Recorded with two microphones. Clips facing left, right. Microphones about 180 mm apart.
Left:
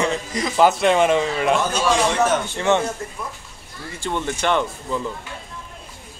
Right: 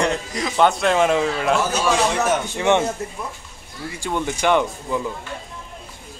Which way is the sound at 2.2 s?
15° right (ahead or behind).